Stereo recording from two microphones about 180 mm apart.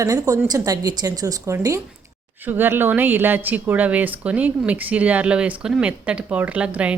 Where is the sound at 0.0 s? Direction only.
20° right (ahead or behind).